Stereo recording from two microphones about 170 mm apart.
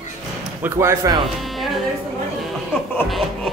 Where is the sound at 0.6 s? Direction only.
15° right (ahead or behind).